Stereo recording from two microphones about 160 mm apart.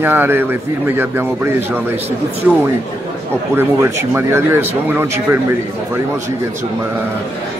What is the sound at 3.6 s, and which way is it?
Speech, 15° right (ahead or behind).